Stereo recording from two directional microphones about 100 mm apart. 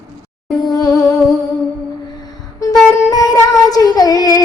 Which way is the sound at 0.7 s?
40° left (ahead or behind).